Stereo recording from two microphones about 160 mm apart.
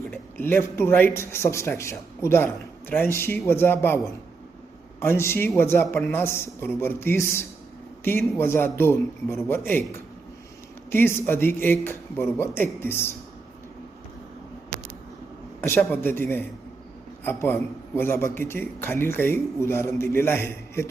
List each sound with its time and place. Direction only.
0.1 s a man's voice: 15° left (ahead or behind)
10.9 s a man's voice: 15° left (ahead or behind)
15.6 s a man's voice: 15° left (ahead or behind)